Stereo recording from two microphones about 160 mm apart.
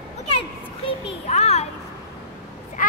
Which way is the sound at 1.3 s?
45° left (ahead or behind).